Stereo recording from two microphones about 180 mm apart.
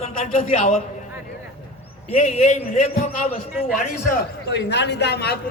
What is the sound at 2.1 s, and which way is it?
A man's voice, 40° left (ahead or behind).